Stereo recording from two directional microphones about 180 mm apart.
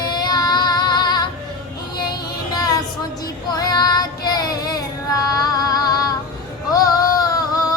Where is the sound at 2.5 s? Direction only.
20° left (ahead or behind).